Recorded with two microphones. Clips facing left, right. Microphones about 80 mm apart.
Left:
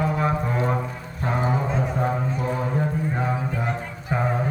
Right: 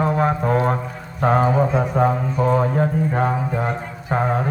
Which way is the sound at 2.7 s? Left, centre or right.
Right.